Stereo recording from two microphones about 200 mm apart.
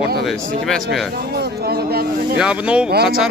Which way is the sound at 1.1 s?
55° right (ahead or behind).